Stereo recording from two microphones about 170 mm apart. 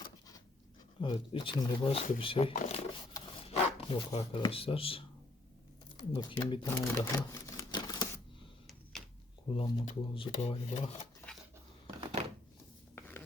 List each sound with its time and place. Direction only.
1.0 s speech: 25° left (ahead or behind)
3.1 s rub: 20° left (ahead or behind)
3.4 s speech: 35° left (ahead or behind)
8.6 s a sound: centre (ahead or behind)
9.5 s speech: 35° left (ahead or behind)
13.0 s a sound: 15° left (ahead or behind)